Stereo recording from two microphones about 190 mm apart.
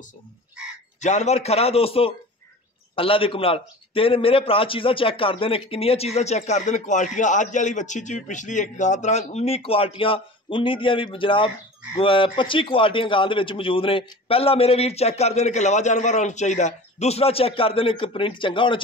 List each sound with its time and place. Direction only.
1.0 s a man's voice: 35° left (ahead or behind)